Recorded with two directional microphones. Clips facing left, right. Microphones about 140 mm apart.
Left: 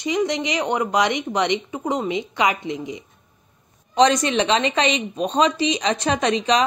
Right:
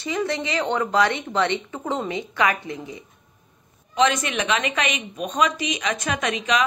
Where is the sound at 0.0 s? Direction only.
20° left (ahead or behind).